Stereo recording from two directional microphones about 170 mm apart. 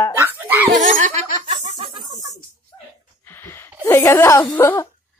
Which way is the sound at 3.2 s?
15° left (ahead or behind).